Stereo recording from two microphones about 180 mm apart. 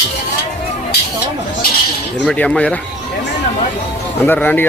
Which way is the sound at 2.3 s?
5° left (ahead or behind).